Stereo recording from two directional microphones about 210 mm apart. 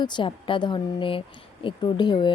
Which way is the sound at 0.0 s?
20° left (ahead or behind).